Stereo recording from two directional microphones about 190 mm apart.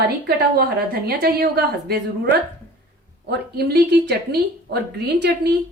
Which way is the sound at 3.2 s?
60° right (ahead or behind).